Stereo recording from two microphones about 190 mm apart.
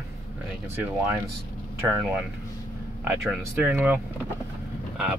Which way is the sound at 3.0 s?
10° right (ahead or behind).